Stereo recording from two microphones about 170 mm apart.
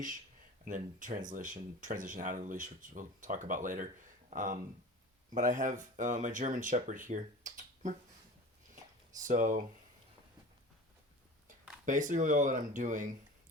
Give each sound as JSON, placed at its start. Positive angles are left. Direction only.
{"t": 0.6, "sound": "speech", "side_deg": -50}
{"t": 8.7, "sound": "a sound", "side_deg": -50}
{"t": 11.9, "sound": "speech", "side_deg": -50}